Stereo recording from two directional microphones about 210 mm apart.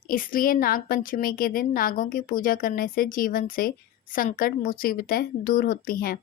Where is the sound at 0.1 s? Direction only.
40° left (ahead or behind).